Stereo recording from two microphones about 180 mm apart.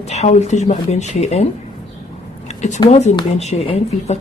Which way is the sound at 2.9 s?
40° left (ahead or behind).